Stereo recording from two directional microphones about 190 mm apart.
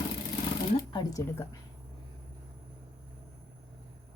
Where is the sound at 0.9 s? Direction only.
20° left (ahead or behind).